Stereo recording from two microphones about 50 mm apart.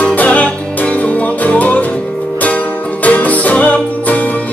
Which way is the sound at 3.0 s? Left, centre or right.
Left.